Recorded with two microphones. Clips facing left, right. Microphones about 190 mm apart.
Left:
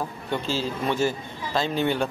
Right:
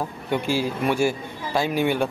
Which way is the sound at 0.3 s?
15° right (ahead or behind).